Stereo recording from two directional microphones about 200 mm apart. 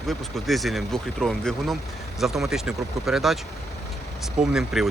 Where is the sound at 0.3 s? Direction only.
Centre (ahead or behind).